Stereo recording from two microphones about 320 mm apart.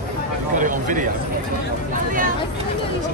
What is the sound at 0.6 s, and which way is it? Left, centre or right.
Speech, right.